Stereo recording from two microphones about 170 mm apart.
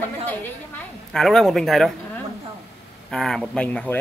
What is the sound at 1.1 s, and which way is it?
Speech, centre (ahead or behind).